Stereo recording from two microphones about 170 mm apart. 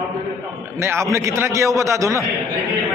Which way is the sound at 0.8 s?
15° right (ahead or behind).